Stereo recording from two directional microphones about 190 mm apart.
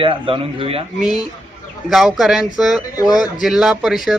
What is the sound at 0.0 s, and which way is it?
Speech, 30° right (ahead or behind).